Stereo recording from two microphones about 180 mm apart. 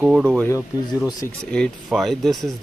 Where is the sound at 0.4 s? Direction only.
15° left (ahead or behind).